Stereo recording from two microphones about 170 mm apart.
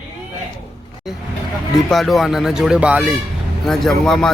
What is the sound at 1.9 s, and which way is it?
A man's voice, centre (ahead or behind).